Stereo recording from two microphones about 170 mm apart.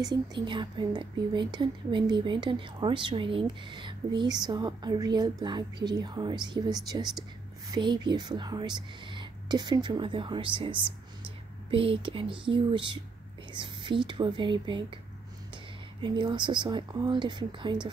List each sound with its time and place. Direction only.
0.0 s speech: 25° right (ahead or behind)